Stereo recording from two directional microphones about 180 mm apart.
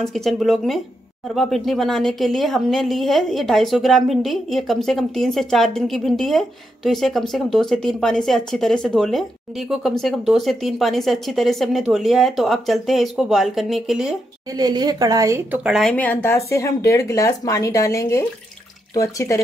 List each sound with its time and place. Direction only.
0.0 s a woman's voice: centre (ahead or behind)
14.6 s a woman's voice: 20° right (ahead or behind)
15.6 s speech: centre (ahead or behind); by 19.4 s 15° left (ahead or behind)